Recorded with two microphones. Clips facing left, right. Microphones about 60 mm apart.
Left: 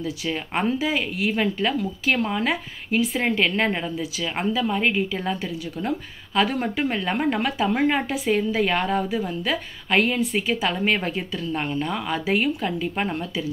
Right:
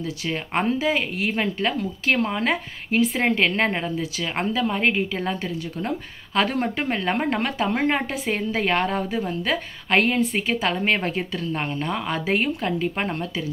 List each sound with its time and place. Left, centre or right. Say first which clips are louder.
0.2 s a woman's voice: right 1 dB; right